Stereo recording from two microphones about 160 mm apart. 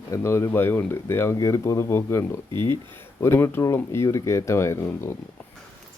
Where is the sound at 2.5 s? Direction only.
30° right (ahead or behind).